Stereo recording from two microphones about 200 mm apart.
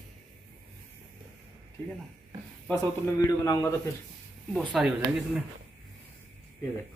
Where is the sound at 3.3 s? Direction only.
15° left (ahead or behind).